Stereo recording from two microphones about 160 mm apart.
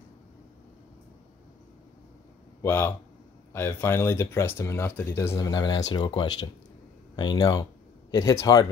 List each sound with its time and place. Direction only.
2.6 s speech: 15° left (ahead or behind)